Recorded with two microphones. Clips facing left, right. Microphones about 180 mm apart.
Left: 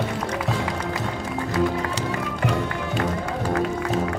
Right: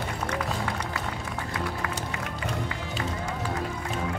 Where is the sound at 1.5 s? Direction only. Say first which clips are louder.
Left 10 dB; 80° left; by 3.4 s 60° left (ahead or behind).